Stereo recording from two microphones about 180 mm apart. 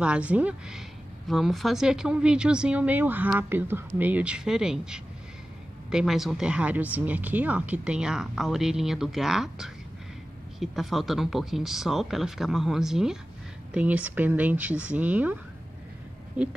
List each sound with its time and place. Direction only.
0.0 s speech: 5° right (ahead or behind)